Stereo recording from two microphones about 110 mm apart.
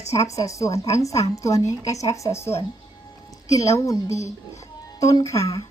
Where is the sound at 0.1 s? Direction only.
30° left (ahead or behind).